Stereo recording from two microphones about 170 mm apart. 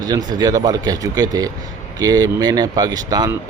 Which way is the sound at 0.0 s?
25° right (ahead or behind).